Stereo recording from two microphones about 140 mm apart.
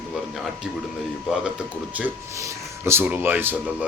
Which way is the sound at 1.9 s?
10° right (ahead or behind).